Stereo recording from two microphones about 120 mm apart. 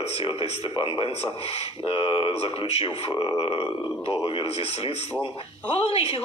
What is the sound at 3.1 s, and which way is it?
Speech, 35° left (ahead or behind).